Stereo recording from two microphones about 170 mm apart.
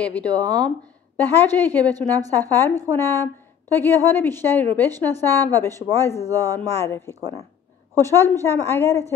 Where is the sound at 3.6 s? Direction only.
10° left (ahead or behind).